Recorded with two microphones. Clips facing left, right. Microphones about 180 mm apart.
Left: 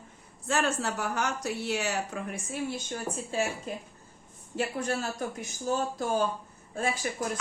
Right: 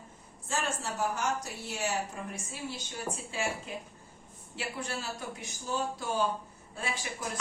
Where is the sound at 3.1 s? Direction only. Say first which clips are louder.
Left 5 dB; 45° left (ahead or behind).